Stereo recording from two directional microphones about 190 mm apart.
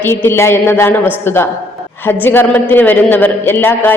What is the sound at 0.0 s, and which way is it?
A woman's voice, 10° left (ahead or behind).